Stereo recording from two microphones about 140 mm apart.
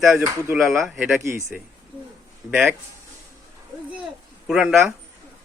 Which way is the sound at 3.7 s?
Centre (ahead or behind).